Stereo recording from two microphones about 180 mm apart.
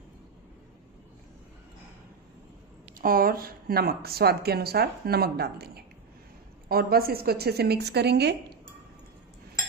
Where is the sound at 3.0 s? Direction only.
55° right (ahead or behind).